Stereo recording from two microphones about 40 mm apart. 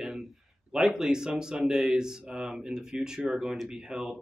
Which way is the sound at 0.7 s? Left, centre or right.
Centre.